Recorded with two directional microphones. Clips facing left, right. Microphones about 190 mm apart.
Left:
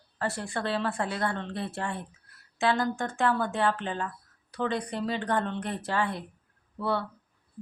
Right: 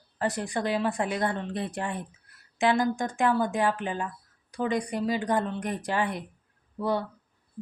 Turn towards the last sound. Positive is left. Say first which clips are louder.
# right 2 dB
turn(degrees=-15)  # may be behind; listen again after turning